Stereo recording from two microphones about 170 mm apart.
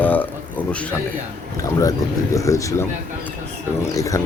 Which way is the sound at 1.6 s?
20° left (ahead or behind).